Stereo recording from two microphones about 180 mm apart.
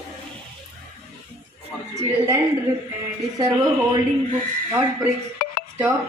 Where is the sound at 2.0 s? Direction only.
15° right (ahead or behind).